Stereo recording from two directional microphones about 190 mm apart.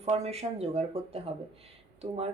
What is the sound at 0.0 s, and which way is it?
Speech, 35° right (ahead or behind).